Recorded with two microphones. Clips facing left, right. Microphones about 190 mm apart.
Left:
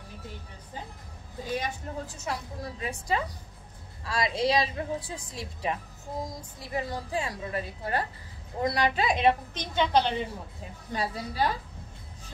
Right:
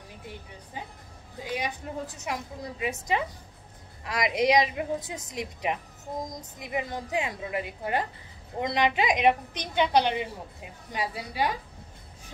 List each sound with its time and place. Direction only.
1.4 s a woman's voice: 15° right (ahead or behind)